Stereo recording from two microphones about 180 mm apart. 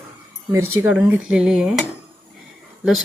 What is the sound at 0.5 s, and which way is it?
Speech, 15° right (ahead or behind).